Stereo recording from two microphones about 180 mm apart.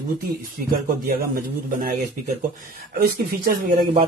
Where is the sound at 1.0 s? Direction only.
50° right (ahead or behind).